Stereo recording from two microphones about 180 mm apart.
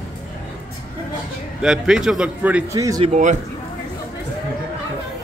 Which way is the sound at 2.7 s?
20° right (ahead or behind).